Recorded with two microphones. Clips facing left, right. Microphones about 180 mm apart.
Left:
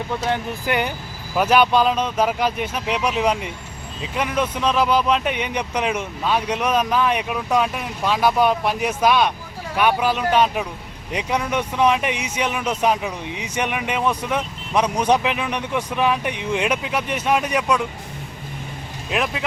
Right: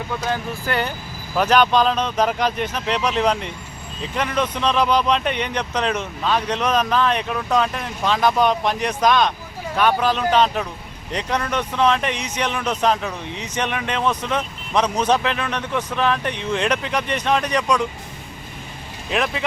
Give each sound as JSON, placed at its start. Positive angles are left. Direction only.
{"t": 0.2, "sound": "speech", "side_deg": 25}
{"t": 19.1, "sound": "speech", "side_deg": 0}